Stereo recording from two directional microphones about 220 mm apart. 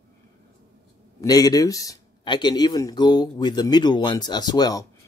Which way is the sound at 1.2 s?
15° left (ahead or behind).